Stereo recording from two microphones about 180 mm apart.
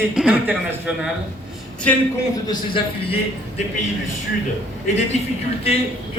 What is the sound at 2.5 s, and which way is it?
Speech, 30° left (ahead or behind).